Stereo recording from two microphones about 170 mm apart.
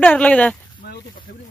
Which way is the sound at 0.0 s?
10° left (ahead or behind).